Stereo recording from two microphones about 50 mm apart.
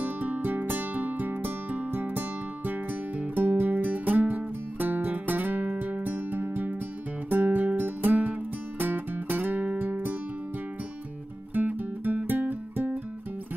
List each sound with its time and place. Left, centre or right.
0.0 s music: right
11.5 s music: right